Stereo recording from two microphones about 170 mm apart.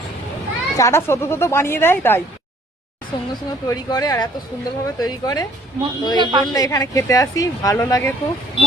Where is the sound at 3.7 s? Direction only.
20° left (ahead or behind).